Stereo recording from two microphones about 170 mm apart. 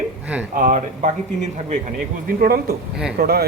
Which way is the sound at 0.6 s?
45° right (ahead or behind).